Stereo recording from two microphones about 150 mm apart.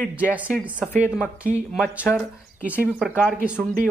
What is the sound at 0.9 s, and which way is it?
Speech, 5° right (ahead or behind).